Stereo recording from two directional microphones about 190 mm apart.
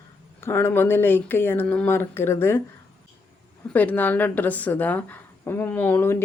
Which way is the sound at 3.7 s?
10° left (ahead or behind).